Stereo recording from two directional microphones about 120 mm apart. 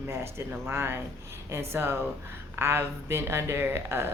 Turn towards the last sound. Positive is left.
turn(degrees=-20)  # may be behind; listen again after turning